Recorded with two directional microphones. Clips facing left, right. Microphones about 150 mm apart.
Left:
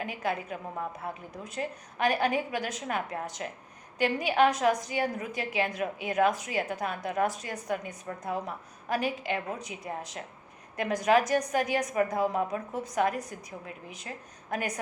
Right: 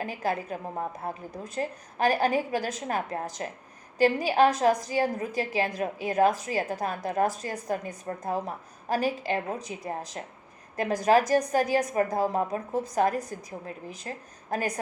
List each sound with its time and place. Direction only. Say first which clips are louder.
0.0 s a woman's voice: right 2 dB; 40° right (ahead or behind)